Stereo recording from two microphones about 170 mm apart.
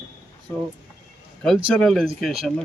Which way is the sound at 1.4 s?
5° left (ahead or behind).